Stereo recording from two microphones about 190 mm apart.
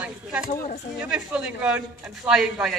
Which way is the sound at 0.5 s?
40° left (ahead or behind).